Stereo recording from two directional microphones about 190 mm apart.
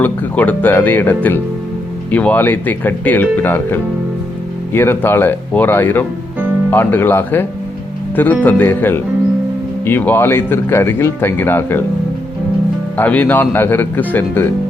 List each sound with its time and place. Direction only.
0.0 s speech: 10° left (ahead or behind)
13.0 s speech: 10° left (ahead or behind)